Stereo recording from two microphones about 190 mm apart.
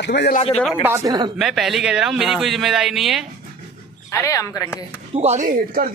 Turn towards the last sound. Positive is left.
turn(degrees=-45)  # may be behind; listen again after turning